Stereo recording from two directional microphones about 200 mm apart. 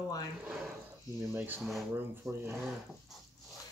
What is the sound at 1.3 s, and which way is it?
Speech, 10° right (ahead or behind).